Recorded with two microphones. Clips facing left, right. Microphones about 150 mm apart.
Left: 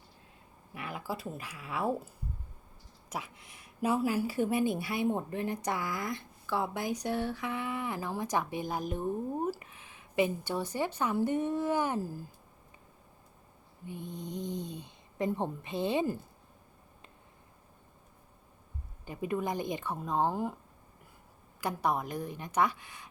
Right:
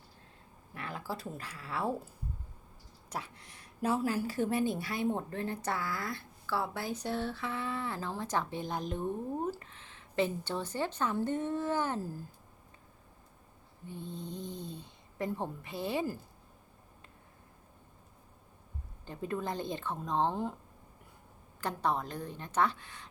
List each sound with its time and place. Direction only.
0.7 s speech: 15° left (ahead or behind)
3.1 s a woman's voice: 10° left (ahead or behind)
13.8 s a woman's voice: 15° left (ahead or behind)
19.0 s a woman's voice: 10° left (ahead or behind)
21.6 s a woman's voice: 10° left (ahead or behind)